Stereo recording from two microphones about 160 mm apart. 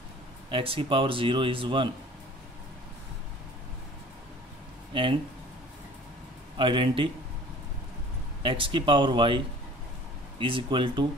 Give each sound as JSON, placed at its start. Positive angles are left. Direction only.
{"t": 0.5, "sound": "speech", "side_deg": -35}
{"t": 4.9, "sound": "speech", "side_deg": -30}
{"t": 6.5, "sound": "speech", "side_deg": -30}
{"t": 8.4, "sound": "speech", "side_deg": -35}
{"t": 10.4, "sound": "speech", "side_deg": -30}